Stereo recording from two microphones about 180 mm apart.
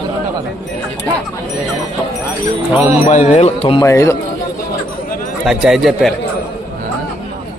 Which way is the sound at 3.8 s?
15° left (ahead or behind).